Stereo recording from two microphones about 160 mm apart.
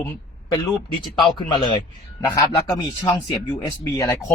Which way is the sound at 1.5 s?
30° left (ahead or behind).